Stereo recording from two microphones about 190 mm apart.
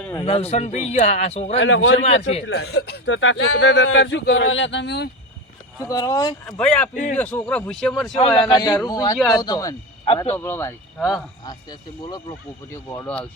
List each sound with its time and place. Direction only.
0.2 s speech: 30° left (ahead or behind)
1.5 s a man's voice: 80° left
2.4 s a man's voice: 65° left (ahead or behind)
5.8 s a man's voice: 20° left (ahead or behind)
6.4 s speech: 5° left (ahead or behind)
6.9 s speech: 40° left (ahead or behind)
7.2 s speech: 10° left (ahead or behind)
8.2 s a man's voice: 30° left (ahead or behind); by 13.2 s 10° left (ahead or behind)